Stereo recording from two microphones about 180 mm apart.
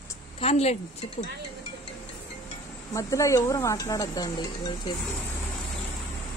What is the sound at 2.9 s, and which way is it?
A man's voice, 15° left (ahead or behind).